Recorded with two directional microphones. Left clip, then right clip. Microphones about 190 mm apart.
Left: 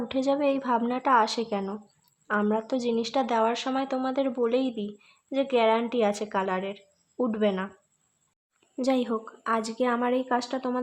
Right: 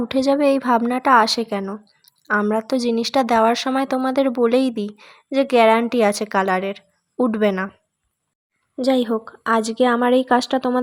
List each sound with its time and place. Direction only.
0.1 s a woman's voice: 25° right (ahead or behind)
8.7 s a woman's voice: 30° right (ahead or behind)